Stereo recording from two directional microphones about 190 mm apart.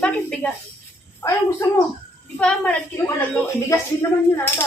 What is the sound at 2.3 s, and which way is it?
Speech, 5° left (ahead or behind).